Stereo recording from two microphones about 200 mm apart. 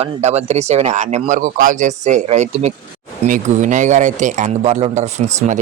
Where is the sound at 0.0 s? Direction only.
35° right (ahead or behind).